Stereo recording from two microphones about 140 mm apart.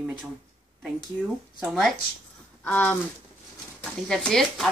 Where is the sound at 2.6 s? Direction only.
10° left (ahead or behind).